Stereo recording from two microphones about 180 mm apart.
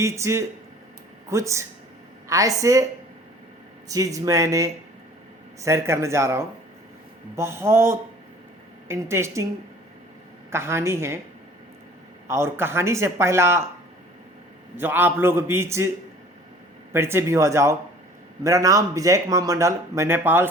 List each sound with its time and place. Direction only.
0.0 s speech: 15° right (ahead or behind)
3.8 s speech: 20° right (ahead or behind)
10.5 s speech: 15° right (ahead or behind)
12.3 s speech: 15° right (ahead or behind)
14.8 s speech: 10° right (ahead or behind)
16.9 s speech: 15° right (ahead or behind)